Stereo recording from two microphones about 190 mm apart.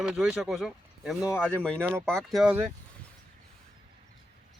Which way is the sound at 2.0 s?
5° left (ahead or behind).